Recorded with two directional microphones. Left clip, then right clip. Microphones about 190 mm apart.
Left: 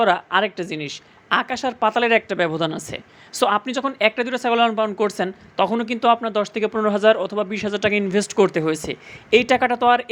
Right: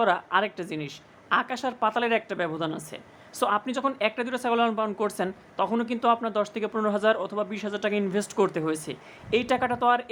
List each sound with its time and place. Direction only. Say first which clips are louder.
0.0 s a woman's voice: left 6 dB; 15° left (ahead or behind)